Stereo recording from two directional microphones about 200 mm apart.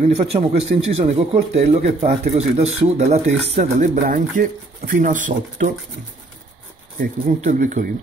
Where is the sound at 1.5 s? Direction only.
30° right (ahead or behind).